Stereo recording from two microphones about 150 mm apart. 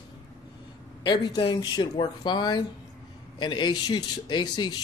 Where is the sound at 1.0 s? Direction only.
30° left (ahead or behind).